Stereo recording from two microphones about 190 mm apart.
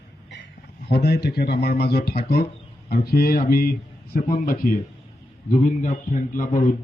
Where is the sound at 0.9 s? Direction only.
60° left (ahead or behind).